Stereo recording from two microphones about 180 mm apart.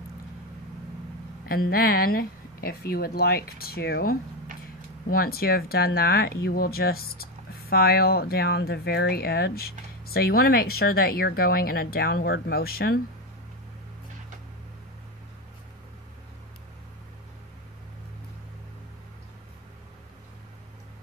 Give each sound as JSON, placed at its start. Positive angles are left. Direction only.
{"t": 1.5, "sound": "speech", "side_deg": 55}